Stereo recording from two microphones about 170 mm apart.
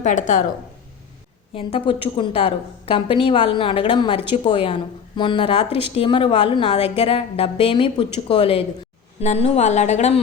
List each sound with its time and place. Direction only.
0.0 s speech: 50° left (ahead or behind)
1.5 s a woman's voice: 30° left (ahead or behind)